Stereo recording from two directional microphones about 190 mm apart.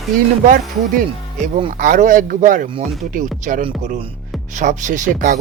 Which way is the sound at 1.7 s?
45° right (ahead or behind).